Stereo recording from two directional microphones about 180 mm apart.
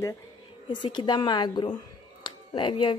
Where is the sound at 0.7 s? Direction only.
25° left (ahead or behind).